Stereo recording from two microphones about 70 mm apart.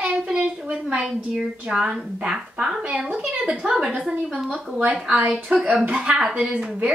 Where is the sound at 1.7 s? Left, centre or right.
Centre.